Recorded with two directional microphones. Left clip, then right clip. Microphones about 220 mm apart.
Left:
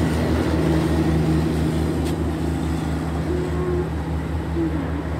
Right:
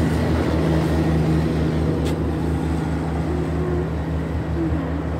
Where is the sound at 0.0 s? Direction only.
40° left (ahead or behind).